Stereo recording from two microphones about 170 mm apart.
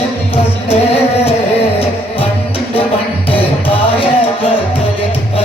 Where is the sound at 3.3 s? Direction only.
35° left (ahead or behind).